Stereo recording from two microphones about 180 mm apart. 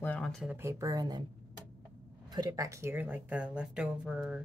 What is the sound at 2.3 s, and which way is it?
Speech, 20° right (ahead or behind).